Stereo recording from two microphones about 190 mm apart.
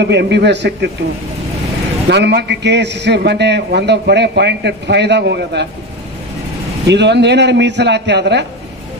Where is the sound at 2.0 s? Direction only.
60° right (ahead or behind).